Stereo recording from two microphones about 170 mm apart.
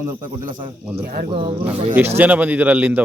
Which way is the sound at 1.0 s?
65° right (ahead or behind).